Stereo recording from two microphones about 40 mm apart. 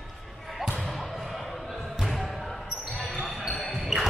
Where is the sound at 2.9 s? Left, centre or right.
Centre.